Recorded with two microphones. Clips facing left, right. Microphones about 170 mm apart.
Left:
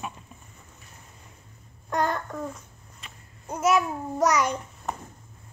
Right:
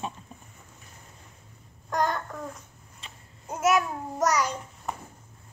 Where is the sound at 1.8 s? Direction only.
Centre (ahead or behind).